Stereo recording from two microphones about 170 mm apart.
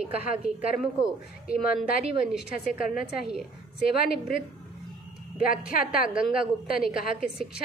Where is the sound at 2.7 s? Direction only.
55° left (ahead or behind).